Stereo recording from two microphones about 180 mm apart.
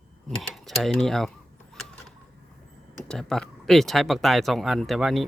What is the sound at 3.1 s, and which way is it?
Speech, 5° left (ahead or behind).